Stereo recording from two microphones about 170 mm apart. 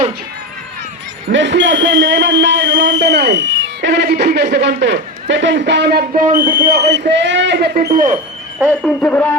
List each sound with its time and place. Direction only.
1.3 s a man's voice: 90° right; by 4.4 s 65° right (ahead or behind)
4.5 s a man's voice: 80° right; by 6.2 s 65° right (ahead or behind)
6.2 s speech: 55° right (ahead or behind); by 7.0 s 70° right (ahead or behind)
7.1 s speech: 90° right; by 8.2 s 50° right (ahead or behind)
8.8 s speech: 10° left (ahead or behind)